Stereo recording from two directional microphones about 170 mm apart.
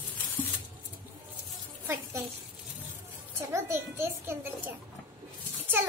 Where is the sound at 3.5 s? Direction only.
15° right (ahead or behind).